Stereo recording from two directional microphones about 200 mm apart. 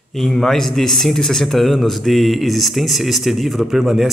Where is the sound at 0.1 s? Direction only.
Centre (ahead or behind).